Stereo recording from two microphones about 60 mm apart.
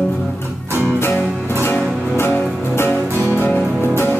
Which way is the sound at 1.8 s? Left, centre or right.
Centre.